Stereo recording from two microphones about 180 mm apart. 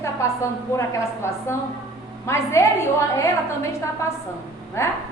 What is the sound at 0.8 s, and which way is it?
A woman's voice, 15° left (ahead or behind).